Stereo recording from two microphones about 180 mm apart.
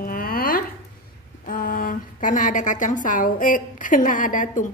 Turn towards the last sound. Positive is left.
turn(degrees=45)  # may be behind; listen again after turning